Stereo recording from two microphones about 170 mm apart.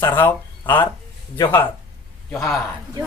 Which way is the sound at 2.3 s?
5° left (ahead or behind).